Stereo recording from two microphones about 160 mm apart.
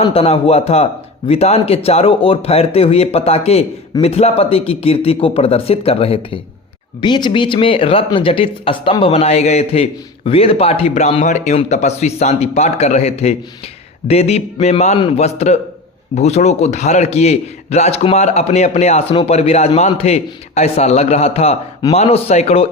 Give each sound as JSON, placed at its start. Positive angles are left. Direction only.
{"t": 0.0, "sound": "speech", "side_deg": 35}